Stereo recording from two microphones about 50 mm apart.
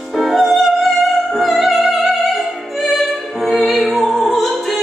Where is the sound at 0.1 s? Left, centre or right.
Centre.